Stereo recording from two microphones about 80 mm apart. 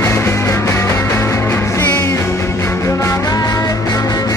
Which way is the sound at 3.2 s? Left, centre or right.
Left.